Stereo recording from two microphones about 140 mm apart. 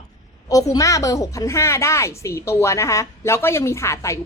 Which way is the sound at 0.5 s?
25° left (ahead or behind).